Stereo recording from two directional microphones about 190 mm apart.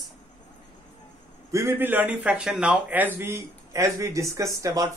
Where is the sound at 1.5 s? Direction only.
15° right (ahead or behind).